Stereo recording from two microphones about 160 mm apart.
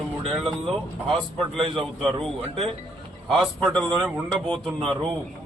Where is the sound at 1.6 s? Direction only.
35° right (ahead or behind).